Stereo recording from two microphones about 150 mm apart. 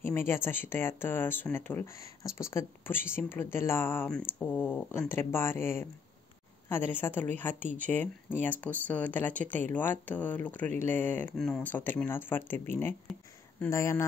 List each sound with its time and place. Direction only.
0.0 s speech: 15° left (ahead or behind)